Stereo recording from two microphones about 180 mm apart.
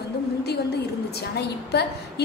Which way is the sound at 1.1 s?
65° left (ahead or behind).